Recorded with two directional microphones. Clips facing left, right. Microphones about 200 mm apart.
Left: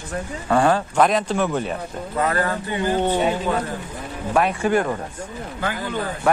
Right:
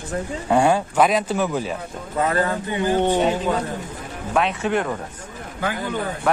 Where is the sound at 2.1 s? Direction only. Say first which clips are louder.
Right 1 dB; 25° right (ahead or behind).